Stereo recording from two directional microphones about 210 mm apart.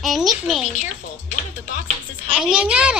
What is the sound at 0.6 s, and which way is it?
Speech, 35° left (ahead or behind).